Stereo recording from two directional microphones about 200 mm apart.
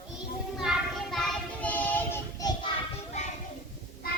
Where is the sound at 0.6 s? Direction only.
Centre (ahead or behind).